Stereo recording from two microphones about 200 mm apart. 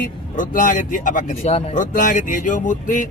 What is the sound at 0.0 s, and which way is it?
A man's voice, 40° left (ahead or behind).